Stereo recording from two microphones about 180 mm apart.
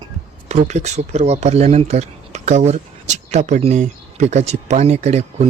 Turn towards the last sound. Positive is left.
turn(degrees=-35)  # may be behind; listen again after turning